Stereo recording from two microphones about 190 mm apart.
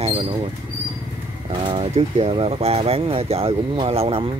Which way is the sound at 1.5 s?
25° right (ahead or behind).